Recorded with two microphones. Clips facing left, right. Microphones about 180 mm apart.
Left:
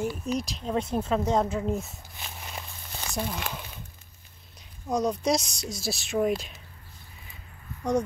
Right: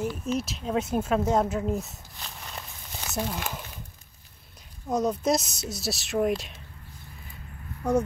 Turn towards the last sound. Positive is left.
turn(degrees=-5)  # may be behind; listen again after turning